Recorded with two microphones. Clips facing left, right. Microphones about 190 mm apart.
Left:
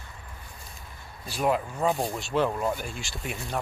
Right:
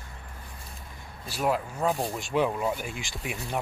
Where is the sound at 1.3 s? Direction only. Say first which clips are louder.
Left 1 dB; centre (ahead or behind).